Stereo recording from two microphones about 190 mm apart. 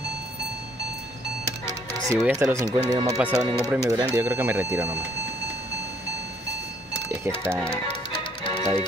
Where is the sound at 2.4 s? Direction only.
15° right (ahead or behind).